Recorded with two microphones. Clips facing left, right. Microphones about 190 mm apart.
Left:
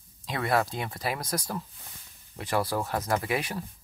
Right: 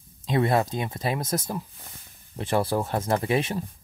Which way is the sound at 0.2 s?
20° right (ahead or behind).